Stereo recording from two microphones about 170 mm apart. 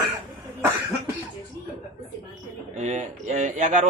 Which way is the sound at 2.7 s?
45° right (ahead or behind).